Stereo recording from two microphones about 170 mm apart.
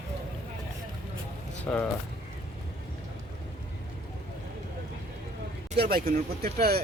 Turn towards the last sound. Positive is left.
turn(degrees=-60)  # may be behind; listen again after turning